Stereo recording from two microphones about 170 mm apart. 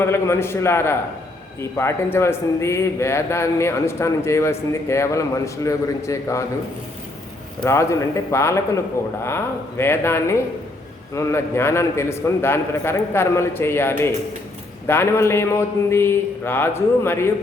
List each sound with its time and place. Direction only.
0.0 s a man's voice: 15° left (ahead or behind)
7.6 s a man's voice: 15° left (ahead or behind)